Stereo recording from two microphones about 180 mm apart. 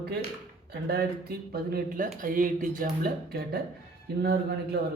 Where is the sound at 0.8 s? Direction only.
60° right (ahead or behind).